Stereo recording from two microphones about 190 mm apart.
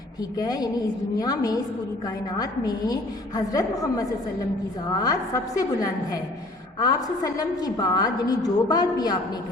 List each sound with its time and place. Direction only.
0.3 s a woman's voice: 20° left (ahead or behind)